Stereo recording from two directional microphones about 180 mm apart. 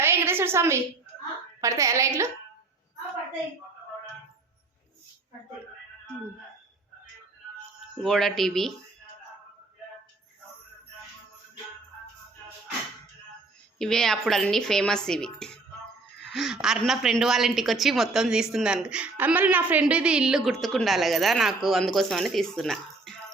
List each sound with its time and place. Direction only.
0.0 s a sound: 15° right (ahead or behind)
1.6 s a woman's voice: 15° right (ahead or behind)
7.9 s a woman's voice: centre (ahead or behind)
13.7 s a woman's voice: 5° left (ahead or behind)